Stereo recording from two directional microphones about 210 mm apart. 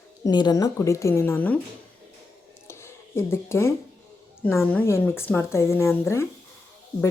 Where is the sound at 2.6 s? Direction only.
10° left (ahead or behind).